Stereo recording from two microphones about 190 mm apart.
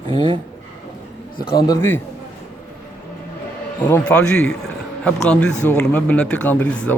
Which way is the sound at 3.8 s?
10° left (ahead or behind).